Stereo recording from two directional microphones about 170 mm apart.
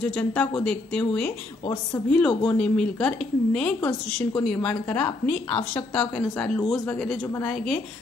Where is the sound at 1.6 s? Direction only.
15° left (ahead or behind).